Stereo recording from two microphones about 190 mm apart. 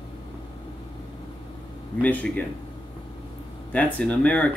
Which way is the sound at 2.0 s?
10° left (ahead or behind).